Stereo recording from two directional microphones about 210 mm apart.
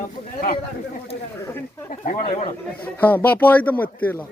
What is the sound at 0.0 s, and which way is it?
Speech, 40° left (ahead or behind).